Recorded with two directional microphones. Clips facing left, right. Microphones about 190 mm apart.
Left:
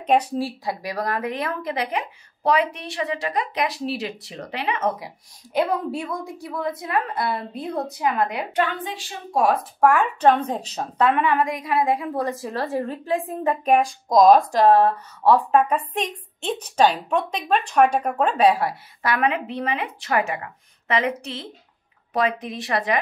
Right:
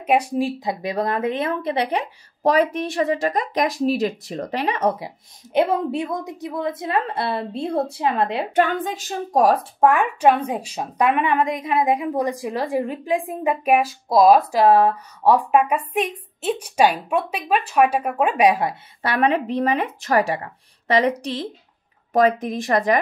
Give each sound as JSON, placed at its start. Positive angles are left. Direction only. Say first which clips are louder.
{"t": 0.0, "sound": "a woman's voice", "louder": "right 1 dB", "side_deg": -10}
{"t": 4.9, "sound": "speech", "louder": "right 3 dB", "side_deg": -25}
{"t": 8.5, "sound": "a woman's voice", "louder": "right 5 dB", "side_deg": -45}
{"t": 9.8, "sound": "a woman's voice", "louder": "right 1 dB", "side_deg": -20}
{"t": 19.5, "sound": "a woman's voice", "louder": "right 5 dB", "side_deg": -45}